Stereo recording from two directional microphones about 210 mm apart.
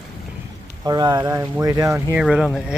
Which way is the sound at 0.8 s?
20° right (ahead or behind).